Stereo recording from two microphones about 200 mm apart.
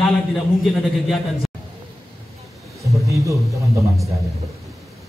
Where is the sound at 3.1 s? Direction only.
15° right (ahead or behind).